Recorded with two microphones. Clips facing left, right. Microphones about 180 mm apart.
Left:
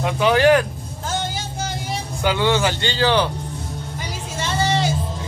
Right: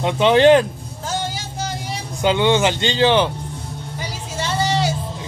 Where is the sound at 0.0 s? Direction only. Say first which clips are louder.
Right 3 dB; 25° right (ahead or behind).